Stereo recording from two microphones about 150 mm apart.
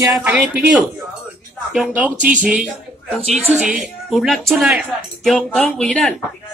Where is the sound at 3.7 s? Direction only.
Centre (ahead or behind).